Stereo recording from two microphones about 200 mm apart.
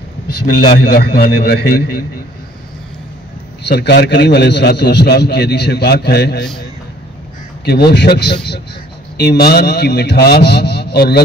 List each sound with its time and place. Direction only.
0.7 s a man's voice: 50° left (ahead or behind)
3.6 s a man's voice: 60° left (ahead or behind)
7.6 s a man's voice: 55° left (ahead or behind)